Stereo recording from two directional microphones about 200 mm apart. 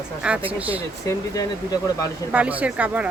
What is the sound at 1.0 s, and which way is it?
Speech, 20° left (ahead or behind).